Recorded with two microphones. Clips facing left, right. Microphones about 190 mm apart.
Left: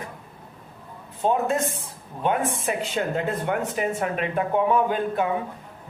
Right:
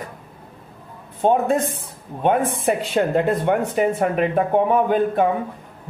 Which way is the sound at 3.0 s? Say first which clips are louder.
Right 7 dB; 45° right (ahead or behind).